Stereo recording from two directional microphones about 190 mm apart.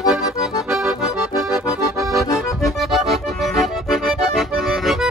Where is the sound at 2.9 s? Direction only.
Centre (ahead or behind).